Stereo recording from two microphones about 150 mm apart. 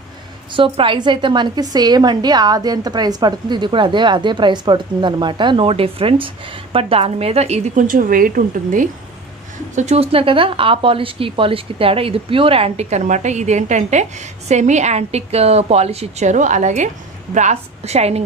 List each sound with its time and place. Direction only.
0.5 s a woman's voice: 35° right (ahead or behind); by 8.8 s 70° right (ahead or behind)
9.8 s speech: 45° right (ahead or behind)